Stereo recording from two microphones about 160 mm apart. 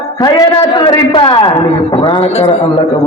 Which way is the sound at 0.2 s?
25° left (ahead or behind).